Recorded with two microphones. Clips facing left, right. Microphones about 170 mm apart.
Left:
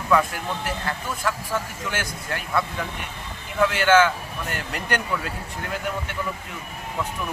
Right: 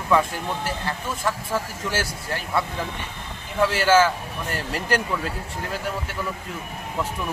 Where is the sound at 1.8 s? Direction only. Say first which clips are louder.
Right 2 dB; 30° right (ahead or behind).